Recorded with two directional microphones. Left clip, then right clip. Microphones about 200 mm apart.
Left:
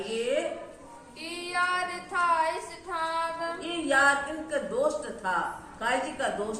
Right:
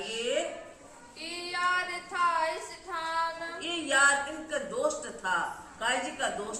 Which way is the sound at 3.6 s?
15° right (ahead or behind).